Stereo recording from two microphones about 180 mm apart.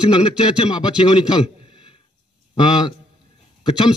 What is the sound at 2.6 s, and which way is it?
Speech, 25° left (ahead or behind).